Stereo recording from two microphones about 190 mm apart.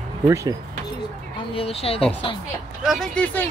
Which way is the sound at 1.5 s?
30° left (ahead or behind).